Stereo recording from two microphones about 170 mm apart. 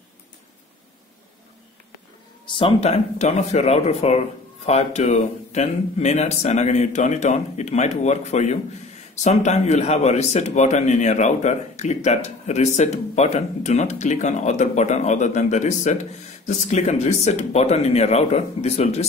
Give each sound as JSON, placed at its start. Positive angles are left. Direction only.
{"t": 2.4, "sound": "a man's voice", "side_deg": 30}